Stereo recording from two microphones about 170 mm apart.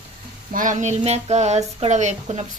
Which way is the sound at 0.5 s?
50° right (ahead or behind).